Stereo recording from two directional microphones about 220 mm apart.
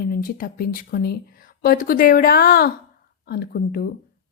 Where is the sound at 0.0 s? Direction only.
40° left (ahead or behind).